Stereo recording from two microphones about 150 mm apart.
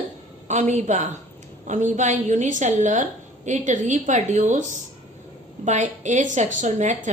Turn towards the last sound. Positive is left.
turn(degrees=-55)  # may be behind; listen again after turning